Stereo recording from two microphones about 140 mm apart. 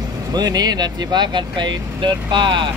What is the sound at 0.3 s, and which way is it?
Speech, 30° right (ahead or behind).